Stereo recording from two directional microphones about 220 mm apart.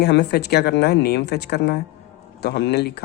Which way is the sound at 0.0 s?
50° left (ahead or behind).